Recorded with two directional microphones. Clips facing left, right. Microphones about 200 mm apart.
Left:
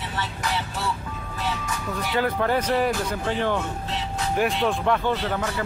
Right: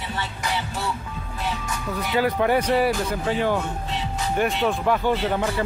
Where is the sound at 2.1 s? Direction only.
10° right (ahead or behind).